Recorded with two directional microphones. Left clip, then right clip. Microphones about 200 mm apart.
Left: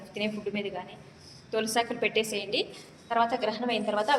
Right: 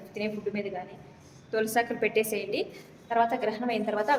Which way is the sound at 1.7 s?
15° right (ahead or behind).